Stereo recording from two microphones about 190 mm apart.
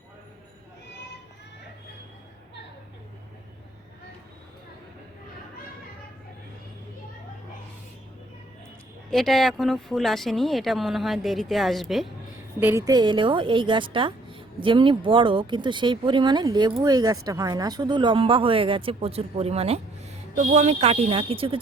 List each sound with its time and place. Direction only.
9.0 s speech: centre (ahead or behind)
12.5 s a woman's voice: 10° right (ahead or behind); by 21.6 s 30° right (ahead or behind)